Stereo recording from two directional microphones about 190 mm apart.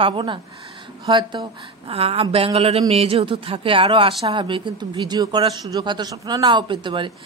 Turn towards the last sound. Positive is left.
turn(degrees=-25)  # may be behind; listen again after turning